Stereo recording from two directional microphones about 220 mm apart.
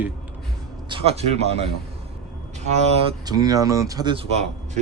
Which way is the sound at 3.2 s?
15° right (ahead or behind).